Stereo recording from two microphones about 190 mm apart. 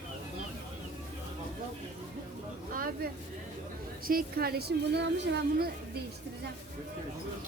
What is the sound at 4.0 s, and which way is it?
A woman's voice, 50° right (ahead or behind).